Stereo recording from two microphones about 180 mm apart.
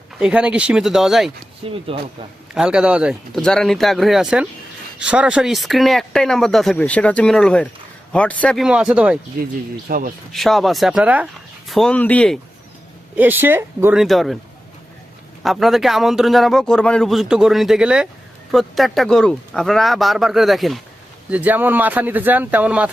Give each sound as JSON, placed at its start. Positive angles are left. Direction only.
{"t": 0.2, "sound": "speech", "side_deg": -5}
{"t": 1.9, "sound": "speech", "side_deg": -30}
{"t": 2.6, "sound": "speech", "side_deg": -5}
{"t": 9.9, "sound": "speech", "side_deg": -55}
{"t": 10.3, "sound": "speech", "side_deg": 0}
{"t": 11.7, "sound": "speech", "side_deg": 5}
{"t": 13.1, "sound": "speech", "side_deg": -10}
{"t": 14.0, "sound": "speech", "side_deg": 0}
{"t": 15.4, "sound": "speech", "side_deg": 0}